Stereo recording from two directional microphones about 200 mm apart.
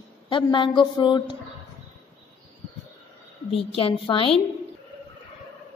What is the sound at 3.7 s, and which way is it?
Speech, 25° left (ahead or behind).